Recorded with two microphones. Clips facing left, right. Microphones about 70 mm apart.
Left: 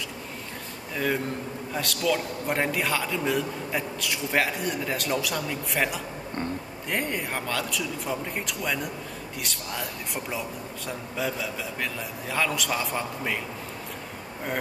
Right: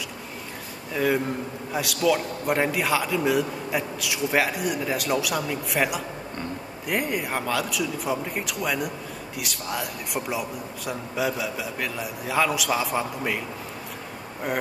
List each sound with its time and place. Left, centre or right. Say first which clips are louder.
0.9 s a man's voice: right 4 dB; centre